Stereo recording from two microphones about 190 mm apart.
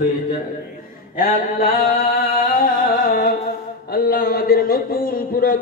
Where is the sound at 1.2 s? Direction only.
50° left (ahead or behind).